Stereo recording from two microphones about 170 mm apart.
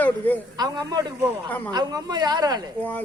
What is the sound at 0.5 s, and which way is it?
A man's voice, 20° right (ahead or behind).